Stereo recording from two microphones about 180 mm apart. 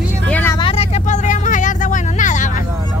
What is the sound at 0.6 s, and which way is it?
Vehicle, 30° left (ahead or behind).